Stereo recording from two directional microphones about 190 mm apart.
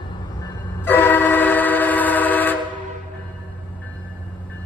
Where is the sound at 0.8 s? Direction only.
10° left (ahead or behind).